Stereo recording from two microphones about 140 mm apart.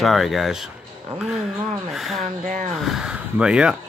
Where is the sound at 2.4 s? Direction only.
70° right (ahead or behind).